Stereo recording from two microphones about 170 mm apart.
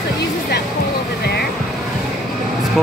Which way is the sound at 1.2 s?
70° left (ahead or behind).